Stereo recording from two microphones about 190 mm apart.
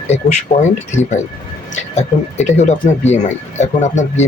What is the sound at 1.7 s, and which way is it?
Speech, 35° left (ahead or behind).